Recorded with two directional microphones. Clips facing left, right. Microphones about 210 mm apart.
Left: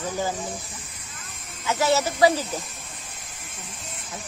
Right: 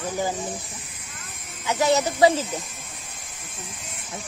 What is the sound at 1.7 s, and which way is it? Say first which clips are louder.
Speech: right 1 dB; 15° right (ahead or behind).